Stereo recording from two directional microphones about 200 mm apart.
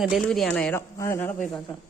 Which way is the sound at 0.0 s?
Centre (ahead or behind).